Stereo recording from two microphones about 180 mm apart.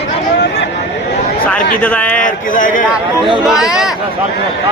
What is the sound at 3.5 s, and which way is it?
Speech, 5° right (ahead or behind).